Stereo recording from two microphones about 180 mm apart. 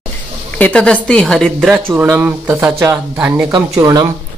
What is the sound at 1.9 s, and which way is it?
Speech, 10° right (ahead or behind).